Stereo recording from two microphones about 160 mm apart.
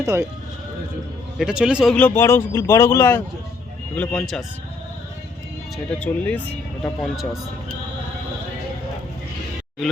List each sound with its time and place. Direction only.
0.0 s speech: 15° right (ahead or behind)
1.4 s speech: 5° right (ahead or behind)
2.0 s speech: 15° left (ahead or behind)
5.7 s speech: 10° left (ahead or behind)